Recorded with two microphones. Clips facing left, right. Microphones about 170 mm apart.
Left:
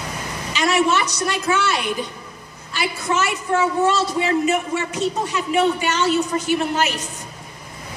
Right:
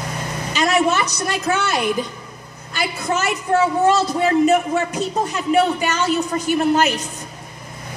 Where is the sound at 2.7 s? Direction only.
50° right (ahead or behind).